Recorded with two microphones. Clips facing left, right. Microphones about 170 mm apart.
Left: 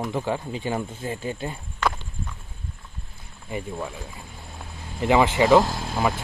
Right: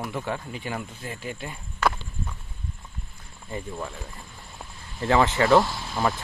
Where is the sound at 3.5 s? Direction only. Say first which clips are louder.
Left 2 dB; 10° left (ahead or behind).